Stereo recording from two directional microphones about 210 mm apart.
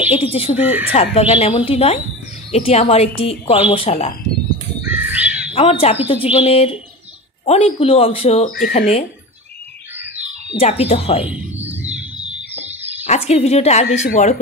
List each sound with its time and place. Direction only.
0.1 s speech: 30° left (ahead or behind)
0.6 s speech: 5° right (ahead or behind)
1.1 s speech: 30° left (ahead or behind)
4.8 s crow: 10° right (ahead or behind)
5.5 s speech: 25° left (ahead or behind)
10.5 s speech: 25° left (ahead or behind)
11.2 s music: 5° right (ahead or behind)
13.1 s speech: 30° left (ahead or behind)